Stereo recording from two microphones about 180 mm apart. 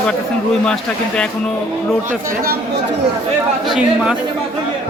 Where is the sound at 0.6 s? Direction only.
5° left (ahead or behind).